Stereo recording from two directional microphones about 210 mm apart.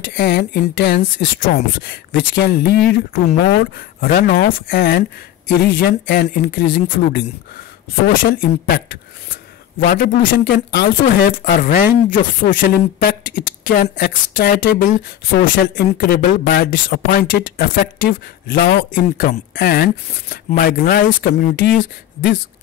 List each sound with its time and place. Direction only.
0.1 s speech: 45° left (ahead or behind)